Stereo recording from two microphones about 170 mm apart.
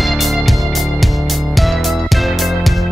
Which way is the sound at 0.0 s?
Centre (ahead or behind).